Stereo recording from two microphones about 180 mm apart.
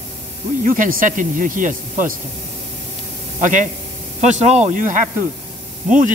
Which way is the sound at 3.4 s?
45° right (ahead or behind).